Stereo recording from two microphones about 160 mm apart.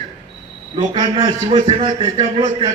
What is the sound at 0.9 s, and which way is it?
A man's voice, 30° right (ahead or behind).